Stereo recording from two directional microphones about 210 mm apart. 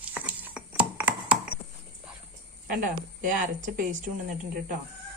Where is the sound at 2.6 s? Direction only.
40° right (ahead or behind).